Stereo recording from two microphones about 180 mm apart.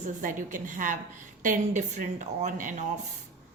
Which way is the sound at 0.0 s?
45° right (ahead or behind).